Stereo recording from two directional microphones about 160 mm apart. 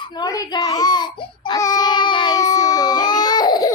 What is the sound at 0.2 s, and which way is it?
Baby cry, 25° left (ahead or behind).